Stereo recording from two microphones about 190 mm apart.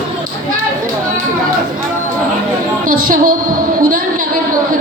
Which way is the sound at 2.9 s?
50° right (ahead or behind).